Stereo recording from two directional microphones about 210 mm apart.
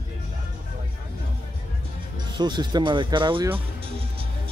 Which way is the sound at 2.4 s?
20° right (ahead or behind).